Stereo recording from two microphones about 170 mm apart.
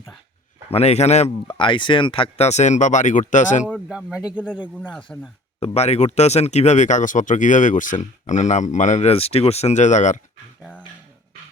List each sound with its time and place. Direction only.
0.7 s a man's voice: 40° left (ahead or behind)
1.5 s speech: 30° left (ahead or behind); by 3.7 s 45° left (ahead or behind)
3.8 s speech: 5° right (ahead or behind)
5.1 s speech: 10° left (ahead or behind)
5.5 s speech: 40° left (ahead or behind)